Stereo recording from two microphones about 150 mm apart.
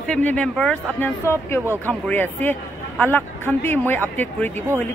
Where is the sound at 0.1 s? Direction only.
5° left (ahead or behind).